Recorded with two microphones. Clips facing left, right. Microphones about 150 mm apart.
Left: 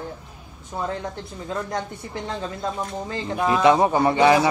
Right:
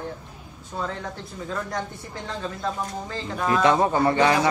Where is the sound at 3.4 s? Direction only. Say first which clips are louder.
Left 3 dB; 15° left (ahead or behind).